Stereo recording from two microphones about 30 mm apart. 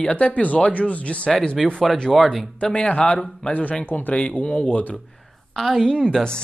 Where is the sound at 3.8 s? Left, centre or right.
Left.